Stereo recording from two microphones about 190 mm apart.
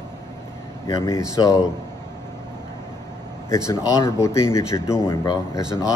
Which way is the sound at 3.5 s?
15° left (ahead or behind).